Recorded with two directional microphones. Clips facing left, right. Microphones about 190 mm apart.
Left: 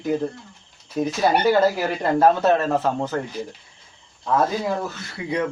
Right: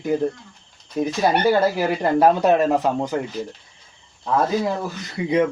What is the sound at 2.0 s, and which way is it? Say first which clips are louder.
Speech: even; 15° right (ahead or behind).